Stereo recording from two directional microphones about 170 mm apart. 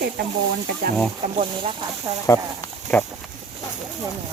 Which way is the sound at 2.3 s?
15° left (ahead or behind).